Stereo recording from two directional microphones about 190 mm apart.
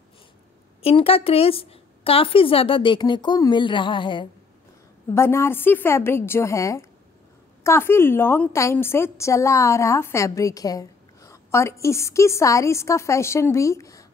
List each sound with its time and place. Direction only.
0.8 s a woman's voice: 30° left (ahead or behind)
5.1 s a woman's voice: 15° left (ahead or behind)